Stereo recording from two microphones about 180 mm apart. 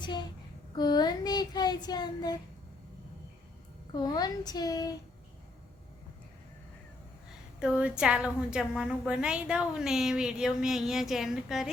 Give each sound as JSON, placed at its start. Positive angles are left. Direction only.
{"t": 0.0, "sound": "child singing", "side_deg": 25}
{"t": 3.9, "sound": "child singing", "side_deg": 20}
{"t": 7.6, "sound": "a woman's voice", "side_deg": -5}